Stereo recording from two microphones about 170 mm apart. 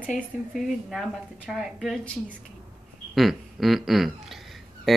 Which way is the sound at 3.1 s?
Centre (ahead or behind).